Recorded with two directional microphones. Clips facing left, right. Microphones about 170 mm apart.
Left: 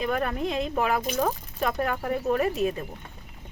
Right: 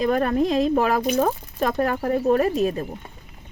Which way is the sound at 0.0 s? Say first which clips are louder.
Right 7 dB; 40° right (ahead or behind).